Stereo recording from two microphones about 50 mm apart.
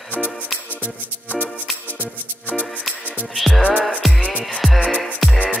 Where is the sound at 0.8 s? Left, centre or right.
Right.